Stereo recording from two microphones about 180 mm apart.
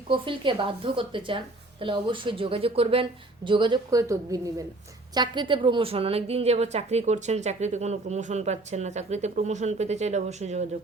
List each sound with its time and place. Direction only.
0.1 s a woman's voice: 30° right (ahead or behind)